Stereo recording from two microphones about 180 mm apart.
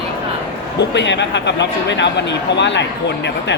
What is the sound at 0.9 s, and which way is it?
Speech, 75° left (ahead or behind).